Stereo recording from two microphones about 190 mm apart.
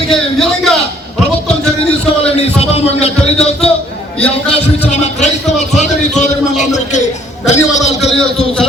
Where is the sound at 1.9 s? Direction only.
30° left (ahead or behind).